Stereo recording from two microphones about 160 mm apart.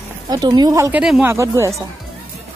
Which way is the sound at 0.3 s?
25° right (ahead or behind).